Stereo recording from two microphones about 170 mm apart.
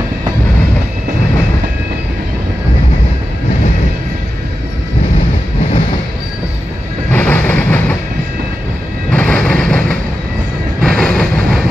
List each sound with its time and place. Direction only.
7.1 s train: 10° left (ahead or behind)
9.1 s music: 10° left (ahead or behind)
10.8 s vehicle: 5° left (ahead or behind)